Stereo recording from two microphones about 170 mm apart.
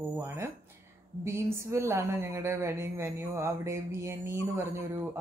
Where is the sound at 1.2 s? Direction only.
15° right (ahead or behind).